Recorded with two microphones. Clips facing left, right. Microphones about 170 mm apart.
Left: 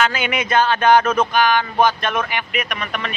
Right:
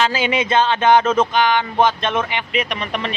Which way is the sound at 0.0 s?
30° right (ahead or behind).